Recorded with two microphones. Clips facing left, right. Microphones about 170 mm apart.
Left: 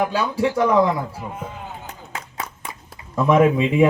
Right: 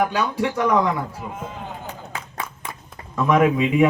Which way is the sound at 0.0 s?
30° left (ahead or behind).